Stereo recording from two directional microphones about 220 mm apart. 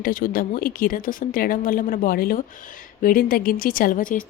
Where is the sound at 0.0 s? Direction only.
40° left (ahead or behind).